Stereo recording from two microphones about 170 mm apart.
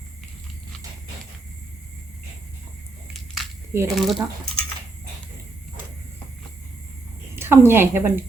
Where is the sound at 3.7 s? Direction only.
15° right (ahead or behind).